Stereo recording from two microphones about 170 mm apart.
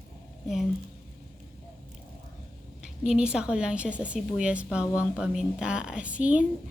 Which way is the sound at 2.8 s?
5° right (ahead or behind).